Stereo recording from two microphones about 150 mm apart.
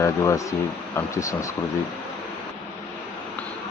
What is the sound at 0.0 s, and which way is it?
Speech, 20° left (ahead or behind).